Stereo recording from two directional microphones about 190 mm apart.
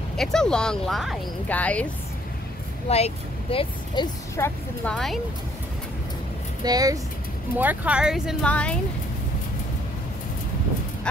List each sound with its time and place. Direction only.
0.2 s speech: 5° left (ahead or behind)
2.9 s speech: 30° left (ahead or behind)
4.8 s speech: centre (ahead or behind)
6.6 s speech: 20° right (ahead or behind)
7.5 s speech: 10° right (ahead or behind)